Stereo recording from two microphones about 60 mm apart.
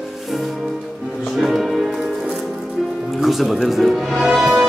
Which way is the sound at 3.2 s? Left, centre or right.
Centre.